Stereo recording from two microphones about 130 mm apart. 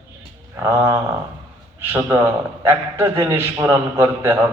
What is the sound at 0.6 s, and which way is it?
A man's voice, 25° right (ahead or behind).